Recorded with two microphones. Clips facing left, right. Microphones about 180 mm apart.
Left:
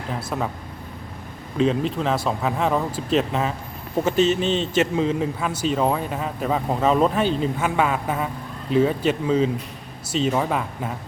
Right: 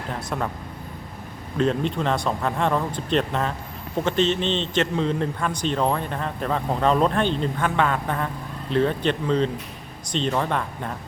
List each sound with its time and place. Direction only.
0.1 s a man's voice: 5° left (ahead or behind)
1.5 s a man's voice: centre (ahead or behind)